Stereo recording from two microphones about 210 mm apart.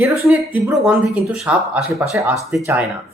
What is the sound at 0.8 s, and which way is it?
Speech, 5° right (ahead or behind).